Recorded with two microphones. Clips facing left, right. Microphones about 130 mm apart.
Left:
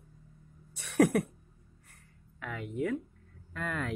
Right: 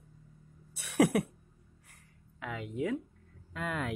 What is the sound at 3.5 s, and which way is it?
Speech, 15° right (ahead or behind).